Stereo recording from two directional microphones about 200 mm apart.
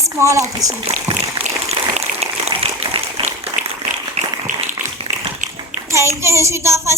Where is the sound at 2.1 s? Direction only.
30° right (ahead or behind).